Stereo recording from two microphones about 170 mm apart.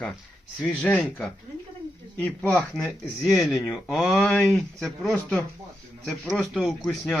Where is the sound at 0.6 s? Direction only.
5° left (ahead or behind).